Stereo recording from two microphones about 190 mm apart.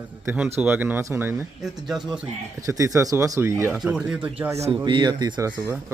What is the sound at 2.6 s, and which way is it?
Speech, 15° right (ahead or behind).